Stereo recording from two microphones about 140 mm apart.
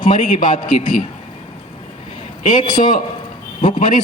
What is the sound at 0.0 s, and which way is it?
A man's voice, 65° left (ahead or behind).